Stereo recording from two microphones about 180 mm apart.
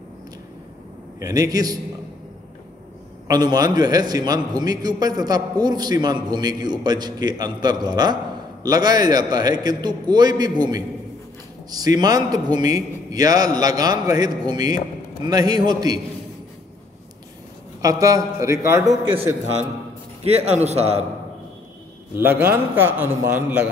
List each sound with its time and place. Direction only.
1.2 s a man's voice: 20° right (ahead or behind)
3.3 s a man's voice: 20° right (ahead or behind)
11.7 s a man's voice: 20° right (ahead or behind)
17.8 s a man's voice: 20° right (ahead or behind)
20.2 s a man's voice: 35° right (ahead or behind)
22.1 s a man's voice: 10° right (ahead or behind)